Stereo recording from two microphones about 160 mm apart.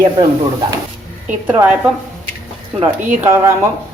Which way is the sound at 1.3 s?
10° right (ahead or behind).